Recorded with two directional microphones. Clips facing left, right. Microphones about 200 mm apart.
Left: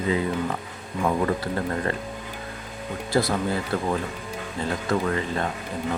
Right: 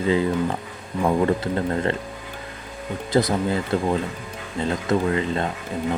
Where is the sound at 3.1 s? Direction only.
20° right (ahead or behind).